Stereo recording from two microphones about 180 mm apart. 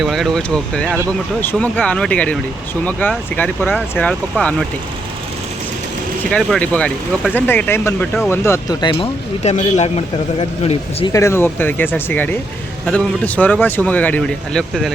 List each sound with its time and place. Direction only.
0.0 s speech: centre (ahead or behind)
0.9 s speech: 15° right (ahead or behind)
1.4 s speech: 10° left (ahead or behind)
6.3 s speech: 5° left (ahead or behind); by 9.0 s 25° left (ahead or behind)
9.4 s a man's voice: 40° left (ahead or behind)
11.1 s speech: 15° left (ahead or behind)